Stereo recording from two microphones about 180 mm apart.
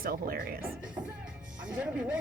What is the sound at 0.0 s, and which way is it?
Speech, 55° right (ahead or behind).